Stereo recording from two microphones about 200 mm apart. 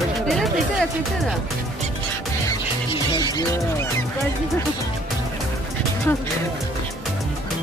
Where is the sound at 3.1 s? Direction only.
20° left (ahead or behind).